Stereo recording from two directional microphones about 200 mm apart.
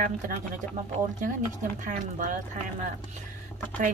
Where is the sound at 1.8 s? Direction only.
40° right (ahead or behind).